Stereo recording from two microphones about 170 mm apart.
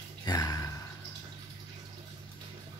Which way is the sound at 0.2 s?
25° left (ahead or behind).